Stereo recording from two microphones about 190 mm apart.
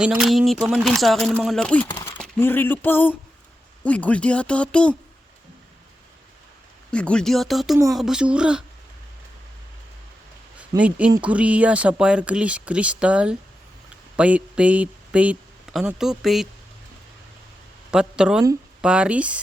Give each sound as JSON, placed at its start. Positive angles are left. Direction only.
{"t": 0.0, "sound": "speech", "side_deg": -5}
{"t": 1.9, "sound": "a sound", "side_deg": 15}
{"t": 2.1, "sound": "speech", "side_deg": 5}
{"t": 6.9, "sound": "speech", "side_deg": 5}
{"t": 10.8, "sound": "speech", "side_deg": -5}
{"t": 17.9, "sound": "speech", "side_deg": -5}